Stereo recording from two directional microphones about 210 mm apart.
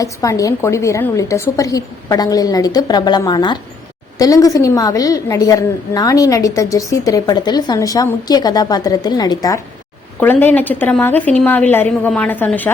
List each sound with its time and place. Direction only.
0.0 s a woman's voice: 15° left (ahead or behind)